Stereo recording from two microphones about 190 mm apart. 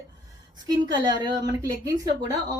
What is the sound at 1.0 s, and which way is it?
A woman's voice, 20° right (ahead or behind).